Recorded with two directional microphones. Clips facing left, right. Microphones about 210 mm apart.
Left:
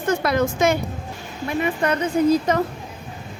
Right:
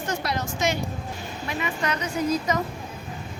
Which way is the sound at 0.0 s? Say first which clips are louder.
Left 9 dB; 55° left (ahead or behind).